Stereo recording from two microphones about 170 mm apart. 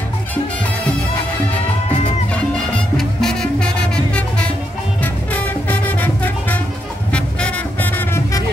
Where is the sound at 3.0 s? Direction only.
Centre (ahead or behind).